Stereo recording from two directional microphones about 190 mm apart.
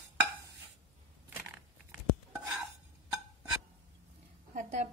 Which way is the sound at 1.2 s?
10° right (ahead or behind).